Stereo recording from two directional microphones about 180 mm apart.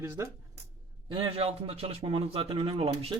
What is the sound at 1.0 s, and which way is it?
A man's voice, 30° right (ahead or behind).